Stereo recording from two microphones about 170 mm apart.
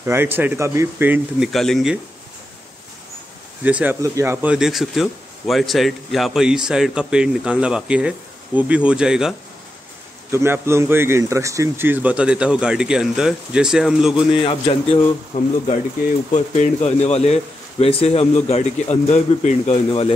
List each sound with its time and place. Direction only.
0.0 s speech: 15° right (ahead or behind)
1.5 s speech: centre (ahead or behind)
3.6 s speech: 10° right (ahead or behind)
10.3 s speech: 15° right (ahead or behind)
14.4 s a man's voice: 30° left (ahead or behind)
15.3 s a man's voice: 50° left (ahead or behind)